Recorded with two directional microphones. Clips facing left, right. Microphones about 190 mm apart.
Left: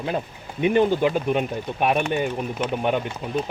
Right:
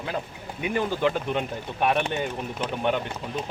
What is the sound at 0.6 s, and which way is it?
Speech, 25° left (ahead or behind).